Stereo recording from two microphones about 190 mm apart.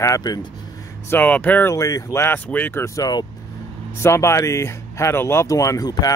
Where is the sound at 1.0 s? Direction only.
10° left (ahead or behind).